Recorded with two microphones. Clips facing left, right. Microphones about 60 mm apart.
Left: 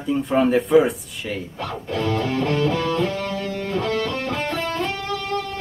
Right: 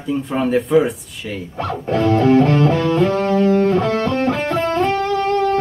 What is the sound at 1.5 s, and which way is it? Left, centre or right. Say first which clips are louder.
Music: right 11 dB; right.